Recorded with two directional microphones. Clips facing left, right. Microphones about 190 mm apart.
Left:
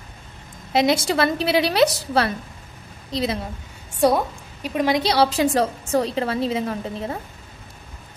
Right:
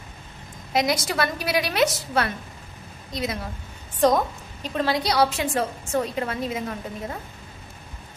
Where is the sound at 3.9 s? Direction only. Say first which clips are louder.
Left 1 dB; 10° left (ahead or behind); by 7.2 s 30° left (ahead or behind).